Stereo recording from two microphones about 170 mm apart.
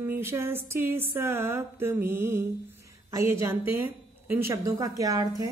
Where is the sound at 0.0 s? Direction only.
15° right (ahead or behind).